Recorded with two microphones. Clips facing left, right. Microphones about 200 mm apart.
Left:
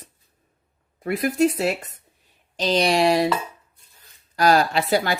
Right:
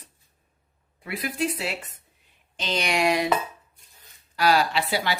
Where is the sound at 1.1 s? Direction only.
45° left (ahead or behind).